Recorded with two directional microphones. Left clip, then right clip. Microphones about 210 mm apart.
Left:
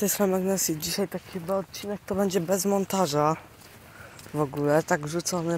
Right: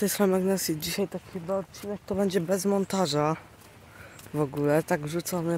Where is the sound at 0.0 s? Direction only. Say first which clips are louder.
Even; 15° right (ahead or behind).